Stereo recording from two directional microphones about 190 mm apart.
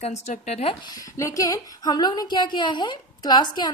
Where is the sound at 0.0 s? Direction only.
35° left (ahead or behind).